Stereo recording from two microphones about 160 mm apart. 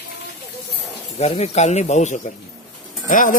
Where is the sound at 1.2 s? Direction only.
45° left (ahead or behind).